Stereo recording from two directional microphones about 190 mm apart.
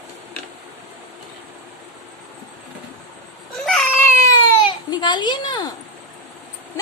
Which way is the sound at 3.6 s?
10° left (ahead or behind).